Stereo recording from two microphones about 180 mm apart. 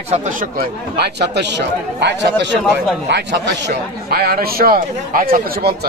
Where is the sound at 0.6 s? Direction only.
65° right (ahead or behind).